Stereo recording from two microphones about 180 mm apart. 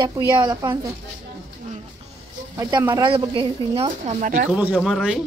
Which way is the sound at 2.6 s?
25° right (ahead or behind).